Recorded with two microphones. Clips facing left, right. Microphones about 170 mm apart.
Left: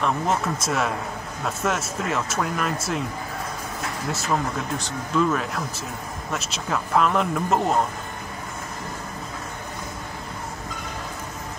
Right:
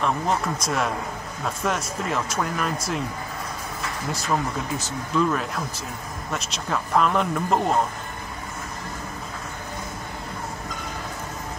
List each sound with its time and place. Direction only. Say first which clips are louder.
0.0 s speech: even; centre (ahead or behind)
4.1 s speech: even; centre (ahead or behind)